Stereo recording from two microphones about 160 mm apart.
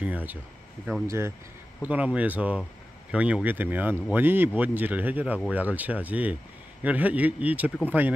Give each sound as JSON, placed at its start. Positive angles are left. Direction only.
{"t": 0.0, "sound": "speech", "side_deg": -10}